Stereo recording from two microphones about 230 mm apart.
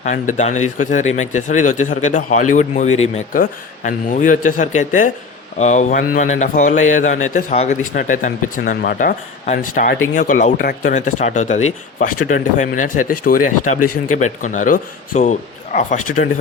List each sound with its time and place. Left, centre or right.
0.0 s speech: left